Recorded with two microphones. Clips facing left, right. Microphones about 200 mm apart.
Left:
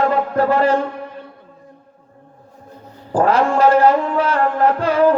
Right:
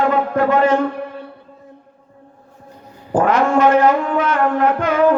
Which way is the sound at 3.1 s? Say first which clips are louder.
Right 1 dB; 35° left (ahead or behind).